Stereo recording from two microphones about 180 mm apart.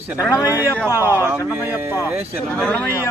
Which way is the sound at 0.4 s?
10° right (ahead or behind).